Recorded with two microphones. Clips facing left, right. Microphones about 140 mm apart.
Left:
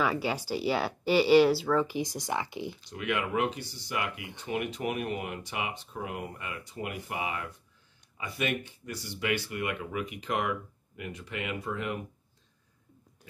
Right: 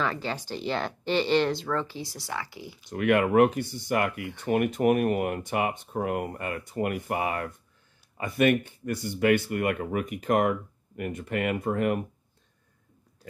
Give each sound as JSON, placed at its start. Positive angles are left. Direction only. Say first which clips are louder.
{"t": 0.0, "sound": "speech", "louder": "left 1 dB", "side_deg": 10}
{"t": 2.9, "sound": "speech", "louder": "right 10 dB", "side_deg": -50}